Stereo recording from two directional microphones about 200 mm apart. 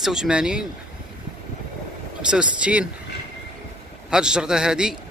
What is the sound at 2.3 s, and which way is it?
Speech, 5° right (ahead or behind).